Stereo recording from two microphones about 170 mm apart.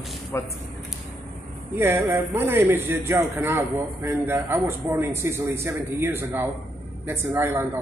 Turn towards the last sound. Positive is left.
turn(degrees=-15)  # may be behind; listen again after turning